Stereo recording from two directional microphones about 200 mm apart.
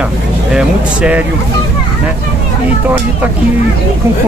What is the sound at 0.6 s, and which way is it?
Vehicle, 5° right (ahead or behind).